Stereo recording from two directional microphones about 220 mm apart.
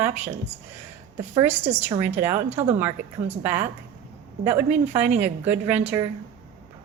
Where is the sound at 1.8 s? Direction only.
10° right (ahead or behind).